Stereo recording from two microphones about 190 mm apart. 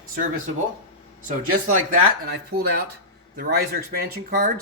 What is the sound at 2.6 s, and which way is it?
A man's voice, 60° right (ahead or behind).